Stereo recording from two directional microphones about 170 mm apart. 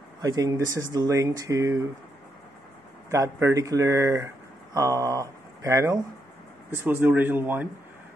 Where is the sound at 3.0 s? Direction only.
15° right (ahead or behind).